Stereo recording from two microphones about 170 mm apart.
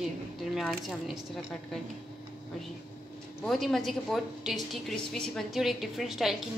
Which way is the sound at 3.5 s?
Centre (ahead or behind).